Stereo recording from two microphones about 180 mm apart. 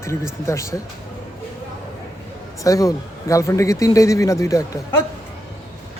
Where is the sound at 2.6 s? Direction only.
20° left (ahead or behind).